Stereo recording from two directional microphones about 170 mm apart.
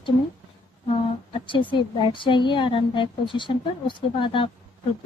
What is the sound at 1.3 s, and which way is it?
A woman's voice, 30° left (ahead or behind).